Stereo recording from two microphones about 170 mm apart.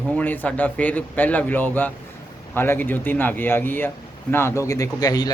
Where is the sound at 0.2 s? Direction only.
10° left (ahead or behind).